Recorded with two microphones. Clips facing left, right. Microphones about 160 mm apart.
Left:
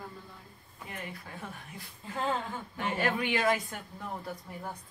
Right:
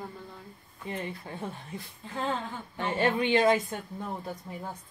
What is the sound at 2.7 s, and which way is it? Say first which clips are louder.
Speech: right 4 dB; 30° right (ahead or behind).